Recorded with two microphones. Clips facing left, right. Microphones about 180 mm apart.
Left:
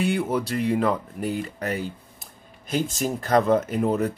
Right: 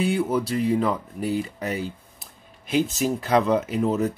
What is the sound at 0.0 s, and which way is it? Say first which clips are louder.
Speech: right 1 dB; centre (ahead or behind).